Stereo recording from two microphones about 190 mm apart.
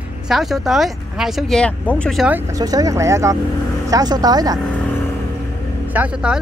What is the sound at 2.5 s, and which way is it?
Speech, 20° right (ahead or behind).